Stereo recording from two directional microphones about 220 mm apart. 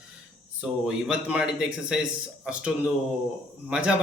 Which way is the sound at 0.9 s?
5° right (ahead or behind).